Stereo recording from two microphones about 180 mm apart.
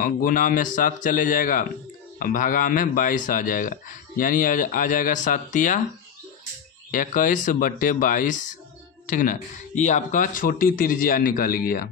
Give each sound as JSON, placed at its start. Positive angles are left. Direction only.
{"t": 0.0, "sound": "a man's voice", "side_deg": 50}
{"t": 6.9, "sound": "a man's voice", "side_deg": 50}